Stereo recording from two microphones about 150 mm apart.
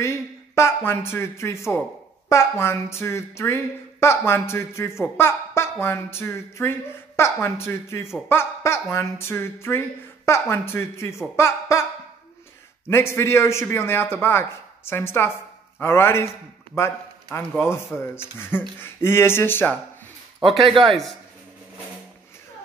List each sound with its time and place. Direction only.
0.0 s speech: 20° left (ahead or behind)
20.6 s speech: 35° right (ahead or behind)
20.9 s a man's voice: centre (ahead or behind)